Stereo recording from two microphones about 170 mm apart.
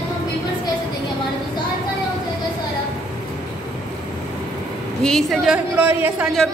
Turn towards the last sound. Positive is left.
turn(degrees=0)  # may be behind; listen again after turning